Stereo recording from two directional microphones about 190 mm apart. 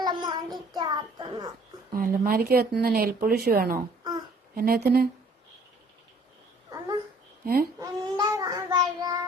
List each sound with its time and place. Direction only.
0.0 s child singing: 20° right (ahead or behind)
0.8 s a child's voice: 20° right (ahead or behind)
1.9 s speech: 50° right (ahead or behind)
7.4 s speech: 50° right (ahead or behind)
7.8 s child singing: 20° right (ahead or behind)